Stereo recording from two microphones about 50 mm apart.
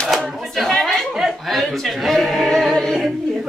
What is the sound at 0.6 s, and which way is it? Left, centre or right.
Chatter, centre.